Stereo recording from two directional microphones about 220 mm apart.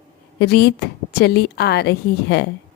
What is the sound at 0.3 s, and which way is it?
A woman's voice, 50° left (ahead or behind).